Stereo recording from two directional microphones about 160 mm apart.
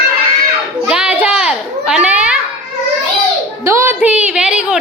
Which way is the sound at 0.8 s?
5° right (ahead or behind).